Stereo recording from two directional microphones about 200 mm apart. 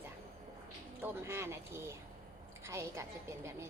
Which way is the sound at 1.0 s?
10° right (ahead or behind).